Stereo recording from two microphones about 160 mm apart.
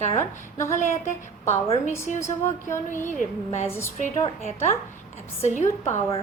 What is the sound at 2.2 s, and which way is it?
Speech, 15° left (ahead or behind).